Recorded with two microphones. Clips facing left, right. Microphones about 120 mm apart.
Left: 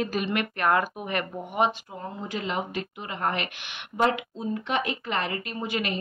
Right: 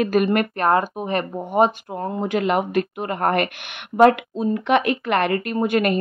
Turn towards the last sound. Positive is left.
turn(degrees=-55)  # may be behind; listen again after turning